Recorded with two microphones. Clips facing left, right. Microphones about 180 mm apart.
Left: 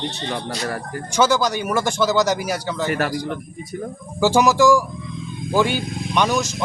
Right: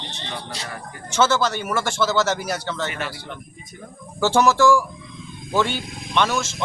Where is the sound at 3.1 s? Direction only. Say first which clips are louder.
Left 9 dB; 40° left (ahead or behind).